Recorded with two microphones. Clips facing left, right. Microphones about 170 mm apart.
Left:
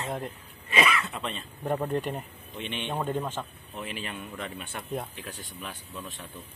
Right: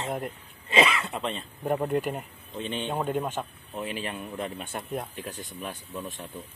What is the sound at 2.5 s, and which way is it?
Speech, 35° right (ahead or behind).